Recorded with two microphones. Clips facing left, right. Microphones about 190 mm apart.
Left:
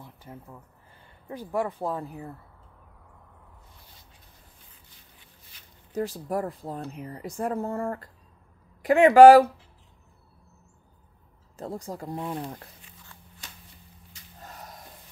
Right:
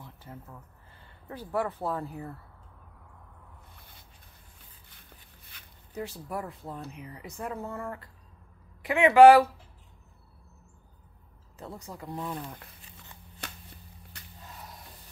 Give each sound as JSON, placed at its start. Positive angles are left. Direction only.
{"t": 0.0, "sound": "a sound", "side_deg": 15}
{"t": 1.3, "sound": "speech", "side_deg": 15}
{"t": 5.9, "sound": "speech", "side_deg": 45}
{"t": 11.5, "sound": "speech", "side_deg": 45}
{"t": 12.2, "sound": "speech", "side_deg": 30}
{"t": 13.4, "sound": "a sound", "side_deg": -60}